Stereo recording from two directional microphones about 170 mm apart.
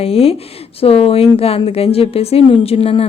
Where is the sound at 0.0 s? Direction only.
35° left (ahead or behind).